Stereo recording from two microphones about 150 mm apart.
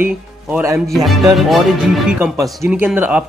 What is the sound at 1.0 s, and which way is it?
Speech, centre (ahead or behind).